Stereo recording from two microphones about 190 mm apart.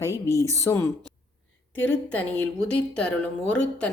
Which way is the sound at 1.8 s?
5° left (ahead or behind).